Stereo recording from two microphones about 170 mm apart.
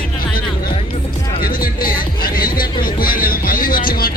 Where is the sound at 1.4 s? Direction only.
55° left (ahead or behind).